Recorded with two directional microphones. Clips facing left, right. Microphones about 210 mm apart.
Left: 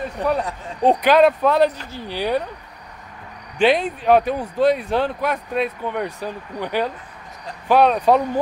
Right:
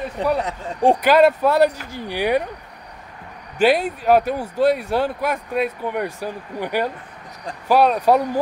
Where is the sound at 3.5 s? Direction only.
5° right (ahead or behind).